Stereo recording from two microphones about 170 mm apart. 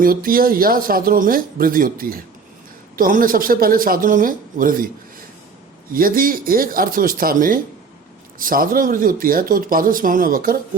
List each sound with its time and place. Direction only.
0.0 s speech: 60° right (ahead or behind)
5.9 s speech: 55° right (ahead or behind)